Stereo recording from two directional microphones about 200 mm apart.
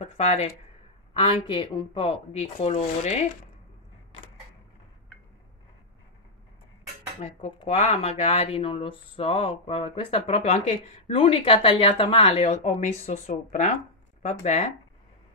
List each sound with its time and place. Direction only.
0.0 s speech: 35° left (ahead or behind)
7.2 s speech: 35° left (ahead or behind)